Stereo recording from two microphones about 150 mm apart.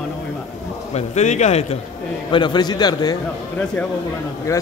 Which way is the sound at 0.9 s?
50° left (ahead or behind).